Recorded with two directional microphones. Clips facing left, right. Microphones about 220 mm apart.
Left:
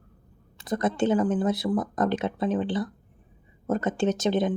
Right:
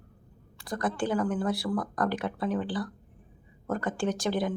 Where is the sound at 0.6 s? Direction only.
20° left (ahead or behind).